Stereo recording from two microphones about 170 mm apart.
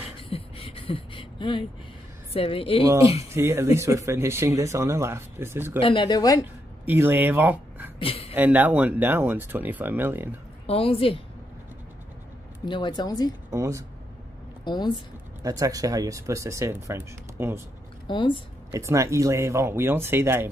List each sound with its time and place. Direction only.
0.2 s a sound: 35° left (ahead or behind)
2.3 s a woman's voice: 35° left (ahead or behind)
3.3 s speech: 15° right (ahead or behind)
5.8 s a woman's voice: 30° left (ahead or behind)
6.9 s speech: 10° right (ahead or behind)
8.0 s a woman's voice: 35° left (ahead or behind)
8.4 s speech: 10° right (ahead or behind)
10.7 s a woman's voice: 35° left (ahead or behind)
12.6 s a woman's voice: 30° left (ahead or behind)
13.5 s speech: 20° right (ahead or behind)
14.6 s a woman's voice: 25° left (ahead or behind)
15.4 s speech: 20° right (ahead or behind)
18.0 s a woman's voice: 30° left (ahead or behind)
18.7 s speech: 15° right (ahead or behind)